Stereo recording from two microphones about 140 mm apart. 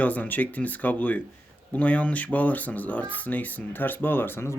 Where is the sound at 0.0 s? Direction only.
10° left (ahead or behind).